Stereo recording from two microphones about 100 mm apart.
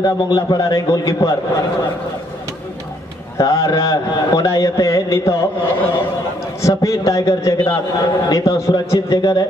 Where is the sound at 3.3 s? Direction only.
35° left (ahead or behind).